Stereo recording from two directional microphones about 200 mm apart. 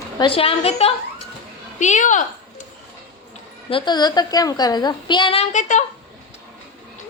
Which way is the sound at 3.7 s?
25° left (ahead or behind).